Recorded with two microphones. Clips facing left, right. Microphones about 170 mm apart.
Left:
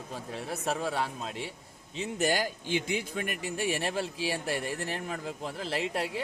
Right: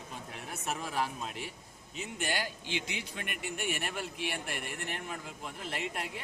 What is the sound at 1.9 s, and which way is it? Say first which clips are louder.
A man's voice: left 7 dB; 40° left (ahead or behind).